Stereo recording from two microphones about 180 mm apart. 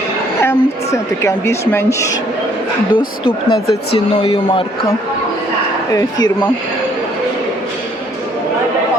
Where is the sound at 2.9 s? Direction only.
25° left (ahead or behind).